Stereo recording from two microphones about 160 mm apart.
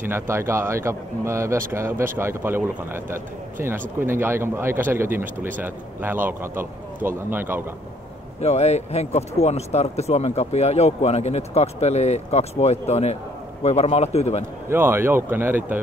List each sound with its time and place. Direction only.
0.0 s speech: 15° right (ahead or behind)
8.4 s speech: 40° left (ahead or behind)
14.7 s speech: 15° right (ahead or behind)